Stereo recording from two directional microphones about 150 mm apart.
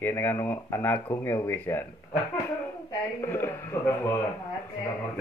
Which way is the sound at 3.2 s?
15° left (ahead or behind).